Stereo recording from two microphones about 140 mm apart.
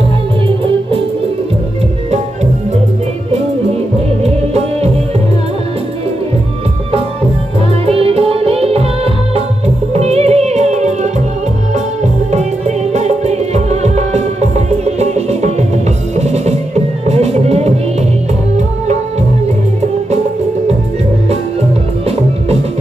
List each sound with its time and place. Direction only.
4.2 s music: 50° right (ahead or behind)
7.8 s music: 45° right (ahead or behind)